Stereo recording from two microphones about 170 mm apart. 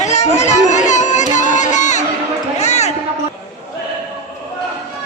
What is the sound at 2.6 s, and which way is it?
Basketball bounce, 40° left (ahead or behind).